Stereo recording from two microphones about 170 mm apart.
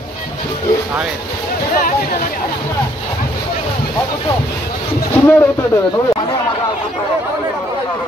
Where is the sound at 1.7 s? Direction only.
60° left (ahead or behind).